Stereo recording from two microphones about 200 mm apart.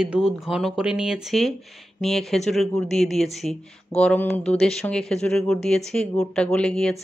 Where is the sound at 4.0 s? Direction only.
5° left (ahead or behind).